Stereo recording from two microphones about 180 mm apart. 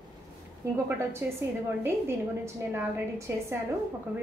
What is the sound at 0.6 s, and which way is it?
A woman's voice, 15° right (ahead or behind).